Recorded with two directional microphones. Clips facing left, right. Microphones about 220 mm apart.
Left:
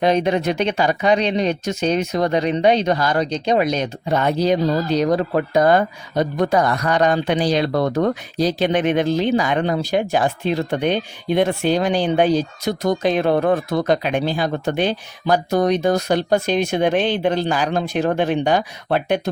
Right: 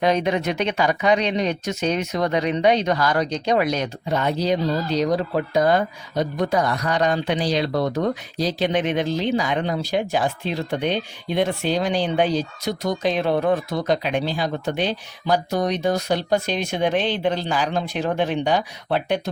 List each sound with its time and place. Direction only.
0.0 s speech: 30° left (ahead or behind)
4.1 s speech: 50° left (ahead or behind)